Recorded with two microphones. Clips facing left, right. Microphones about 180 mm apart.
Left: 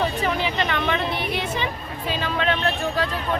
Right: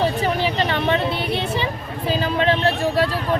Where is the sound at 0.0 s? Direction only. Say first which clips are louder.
Right 3 dB; 35° right (ahead or behind).